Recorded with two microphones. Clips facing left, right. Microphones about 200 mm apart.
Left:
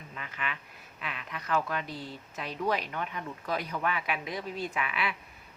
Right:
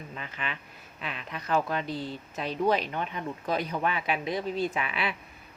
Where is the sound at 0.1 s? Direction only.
30° right (ahead or behind).